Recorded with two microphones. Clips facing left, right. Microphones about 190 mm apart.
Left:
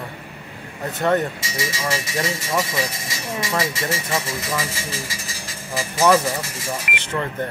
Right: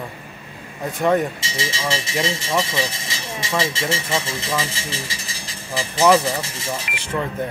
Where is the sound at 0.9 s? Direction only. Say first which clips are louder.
Right 1 dB; 10° right (ahead or behind).